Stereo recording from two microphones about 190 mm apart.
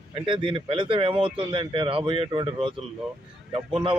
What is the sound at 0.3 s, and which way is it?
Speech, 25° right (ahead or behind).